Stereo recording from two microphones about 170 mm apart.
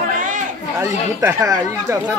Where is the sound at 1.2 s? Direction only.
15° right (ahead or behind).